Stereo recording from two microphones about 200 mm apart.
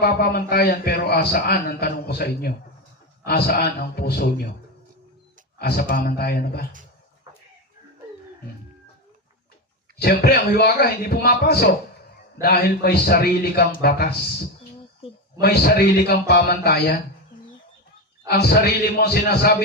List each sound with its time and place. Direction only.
0.0 s a man's voice: 50° left (ahead or behind)
5.5 s a man's voice: 50° left (ahead or behind)
10.0 s a man's voice: 50° left (ahead or behind)
15.4 s a man's voice: 50° left (ahead or behind)
18.4 s a man's voice: 50° left (ahead or behind)